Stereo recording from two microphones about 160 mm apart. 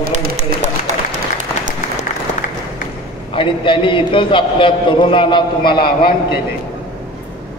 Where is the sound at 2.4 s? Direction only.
55° left (ahead or behind).